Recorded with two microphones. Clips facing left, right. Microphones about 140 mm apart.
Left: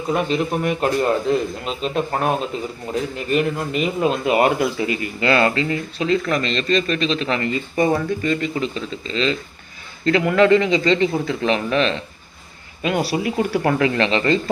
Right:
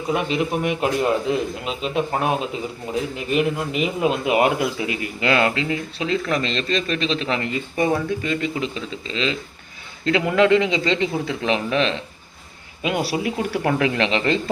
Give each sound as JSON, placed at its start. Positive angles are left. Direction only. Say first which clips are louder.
{"t": 0.1, "sound": "a man's voice", "louder": "left 1 dB", "side_deg": -5}
{"t": 8.6, "sound": "speech", "louder": "left 2 dB", "side_deg": 40}
{"t": 10.1, "sound": "a man's voice", "louder": "left 2 dB", "side_deg": -10}